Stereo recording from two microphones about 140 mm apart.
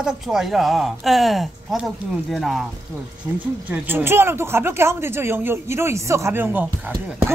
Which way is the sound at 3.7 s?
15° right (ahead or behind).